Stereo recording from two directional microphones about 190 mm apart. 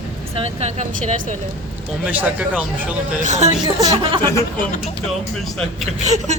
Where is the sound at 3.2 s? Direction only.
40° right (ahead or behind).